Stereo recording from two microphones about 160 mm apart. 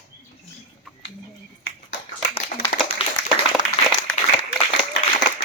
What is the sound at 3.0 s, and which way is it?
Clapping, 35° left (ahead or behind).